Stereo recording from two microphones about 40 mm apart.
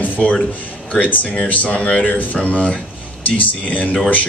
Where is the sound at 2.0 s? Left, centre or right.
Left.